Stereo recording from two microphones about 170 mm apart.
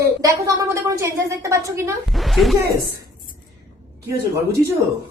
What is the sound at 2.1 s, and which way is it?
Speech, centre (ahead or behind).